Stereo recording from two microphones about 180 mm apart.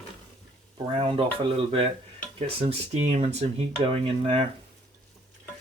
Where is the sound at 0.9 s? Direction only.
30° right (ahead or behind).